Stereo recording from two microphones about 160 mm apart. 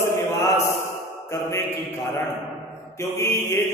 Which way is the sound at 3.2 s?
15° left (ahead or behind).